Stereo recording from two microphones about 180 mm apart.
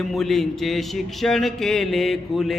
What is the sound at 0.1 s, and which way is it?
Mantra, centre (ahead or behind).